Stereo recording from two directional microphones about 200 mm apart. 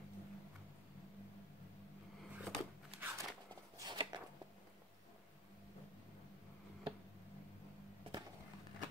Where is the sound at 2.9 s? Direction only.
10° right (ahead or behind).